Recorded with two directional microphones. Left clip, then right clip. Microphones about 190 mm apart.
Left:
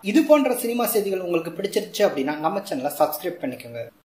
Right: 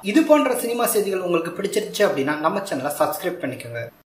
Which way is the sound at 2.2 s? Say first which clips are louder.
Right 3 dB; 45° left (ahead or behind).